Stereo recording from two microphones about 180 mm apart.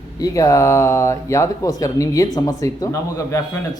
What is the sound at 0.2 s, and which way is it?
Speech, 20° left (ahead or behind).